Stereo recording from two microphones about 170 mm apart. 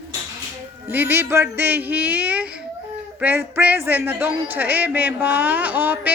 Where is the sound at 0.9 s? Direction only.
10° right (ahead or behind).